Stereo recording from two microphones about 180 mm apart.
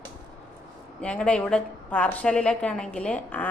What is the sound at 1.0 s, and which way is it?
A woman's voice, 5° left (ahead or behind).